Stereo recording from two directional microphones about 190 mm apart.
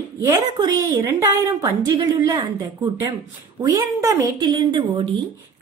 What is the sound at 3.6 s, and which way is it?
Speech, 20° right (ahead or behind).